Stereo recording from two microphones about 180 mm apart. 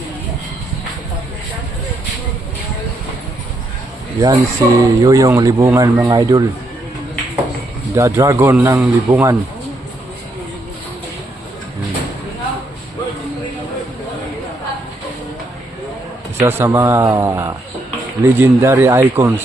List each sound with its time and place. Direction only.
4.2 s speech: 20° right (ahead or behind)
7.9 s speech: 15° right (ahead or behind)
16.4 s speech: 15° right (ahead or behind)